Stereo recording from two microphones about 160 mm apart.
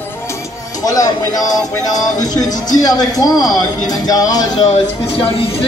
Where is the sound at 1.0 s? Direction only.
25° left (ahead or behind).